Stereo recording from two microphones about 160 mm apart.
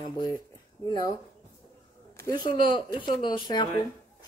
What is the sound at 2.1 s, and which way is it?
Speech, 25° left (ahead or behind).